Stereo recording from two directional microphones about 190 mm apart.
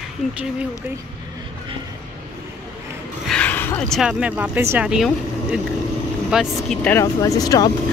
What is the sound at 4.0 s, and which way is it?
Speech, 5° right (ahead or behind).